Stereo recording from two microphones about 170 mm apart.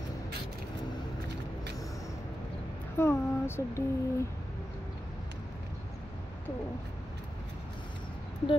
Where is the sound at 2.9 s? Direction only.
15° left (ahead or behind).